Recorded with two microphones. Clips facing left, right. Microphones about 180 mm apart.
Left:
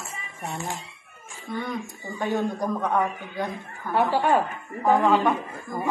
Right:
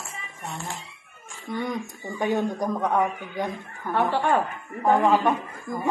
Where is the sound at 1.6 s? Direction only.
15° right (ahead or behind).